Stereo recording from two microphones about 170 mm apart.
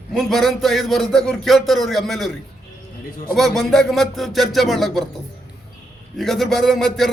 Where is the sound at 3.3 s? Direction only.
Centre (ahead or behind).